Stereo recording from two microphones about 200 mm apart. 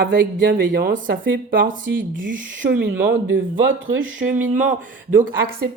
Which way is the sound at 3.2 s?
70° right (ahead or behind).